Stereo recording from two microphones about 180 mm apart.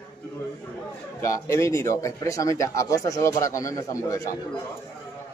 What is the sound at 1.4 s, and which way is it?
Speech, 15° left (ahead or behind).